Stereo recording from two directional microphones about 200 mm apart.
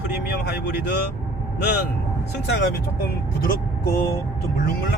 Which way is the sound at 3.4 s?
50° left (ahead or behind).